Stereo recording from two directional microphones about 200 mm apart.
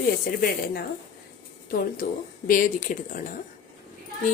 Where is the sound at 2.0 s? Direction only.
45° left (ahead or behind).